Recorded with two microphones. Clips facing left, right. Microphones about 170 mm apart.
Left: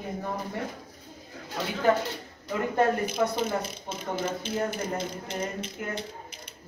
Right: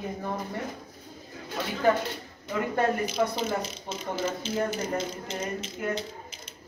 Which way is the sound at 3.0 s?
55° left (ahead or behind).